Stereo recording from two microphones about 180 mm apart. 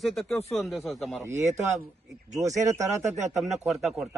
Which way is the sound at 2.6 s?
15° right (ahead or behind).